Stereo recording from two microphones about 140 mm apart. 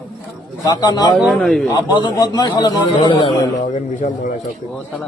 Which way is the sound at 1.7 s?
30° left (ahead or behind).